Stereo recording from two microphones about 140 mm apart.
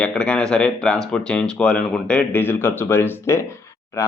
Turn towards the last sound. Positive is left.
turn(degrees=25)  # may be behind; listen again after turning